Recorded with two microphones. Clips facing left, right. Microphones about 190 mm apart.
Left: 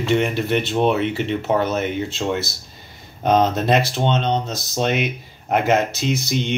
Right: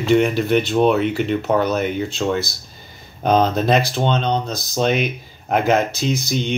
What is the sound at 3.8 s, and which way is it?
Speech, 20° left (ahead or behind).